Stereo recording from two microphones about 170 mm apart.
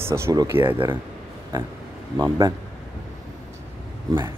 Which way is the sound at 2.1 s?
15° right (ahead or behind).